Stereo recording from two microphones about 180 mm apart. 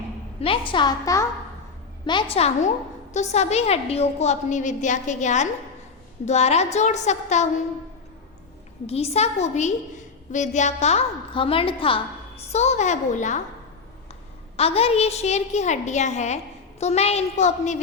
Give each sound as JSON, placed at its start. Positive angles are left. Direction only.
{"t": 0.3, "sound": "a woman's voice", "side_deg": 30}
{"t": 2.3, "sound": "a woman's voice", "side_deg": 40}
{"t": 8.9, "sound": "a woman's voice", "side_deg": 35}
{"t": 14.5, "sound": "a woman's voice", "side_deg": 35}